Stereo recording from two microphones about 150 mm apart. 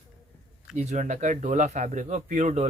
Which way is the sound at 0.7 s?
55° right (ahead or behind).